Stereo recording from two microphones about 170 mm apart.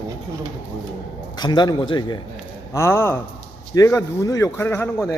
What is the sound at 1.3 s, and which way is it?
Speech, 25° left (ahead or behind).